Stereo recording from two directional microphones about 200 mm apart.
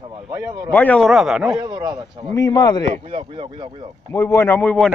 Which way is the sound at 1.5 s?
20° right (ahead or behind).